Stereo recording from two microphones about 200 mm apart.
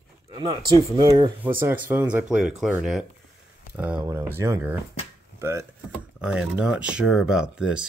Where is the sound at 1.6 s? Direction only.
10° right (ahead or behind).